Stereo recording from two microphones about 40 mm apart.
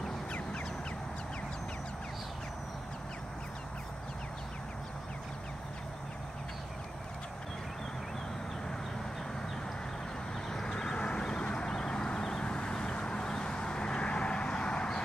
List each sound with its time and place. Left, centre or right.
0.3 s duck: left
10.5 s vehicle: centre